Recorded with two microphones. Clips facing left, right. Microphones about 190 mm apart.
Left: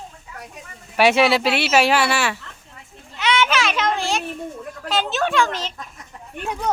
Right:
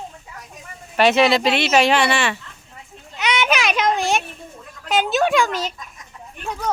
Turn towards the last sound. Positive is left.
turn(degrees=-10)  # may be behind; listen again after turning